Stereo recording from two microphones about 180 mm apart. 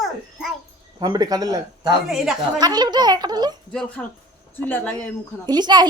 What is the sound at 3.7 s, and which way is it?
A woman's voice, 5° left (ahead or behind).